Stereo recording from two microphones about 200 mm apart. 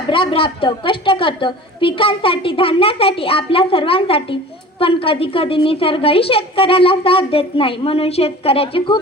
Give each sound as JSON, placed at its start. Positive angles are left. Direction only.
{"t": 0.1, "sound": "a woman's voice", "side_deg": 25}